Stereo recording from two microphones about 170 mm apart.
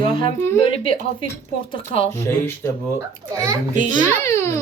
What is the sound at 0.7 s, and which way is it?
Speech, 30° left (ahead or behind).